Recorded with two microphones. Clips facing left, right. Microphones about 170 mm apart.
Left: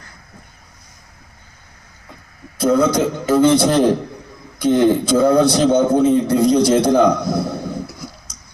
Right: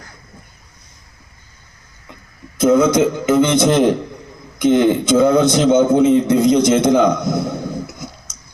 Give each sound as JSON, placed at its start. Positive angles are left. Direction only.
{"t": 2.6, "sound": "a man's voice", "side_deg": -20}